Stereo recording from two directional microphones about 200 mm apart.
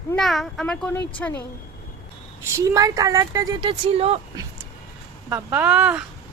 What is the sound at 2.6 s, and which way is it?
Speech, 15° right (ahead or behind).